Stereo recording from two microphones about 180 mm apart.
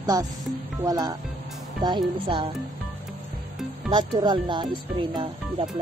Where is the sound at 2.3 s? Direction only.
30° right (ahead or behind).